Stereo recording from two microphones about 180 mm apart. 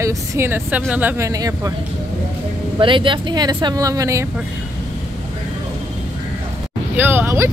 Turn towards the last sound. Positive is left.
turn(degrees=-15)  # may be behind; listen again after turning